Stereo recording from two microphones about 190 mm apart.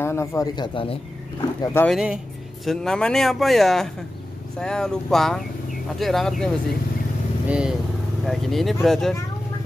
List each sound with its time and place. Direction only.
0.0 s speech: 15° left (ahead or behind)
1.6 s speech: 10° left (ahead or behind)
1.9 s speech: centre (ahead or behind)